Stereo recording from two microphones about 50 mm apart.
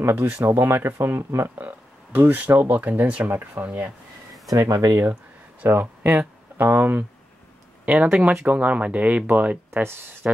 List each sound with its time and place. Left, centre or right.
0.1 s speech: right
0.9 s speech: right
1.6 s speech: right
3.6 s speech: right
4.6 s speech: right
5.7 s speech: right
7.8 s speech: right